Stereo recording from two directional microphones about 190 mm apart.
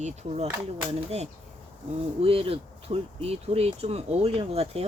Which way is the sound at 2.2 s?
30° right (ahead or behind).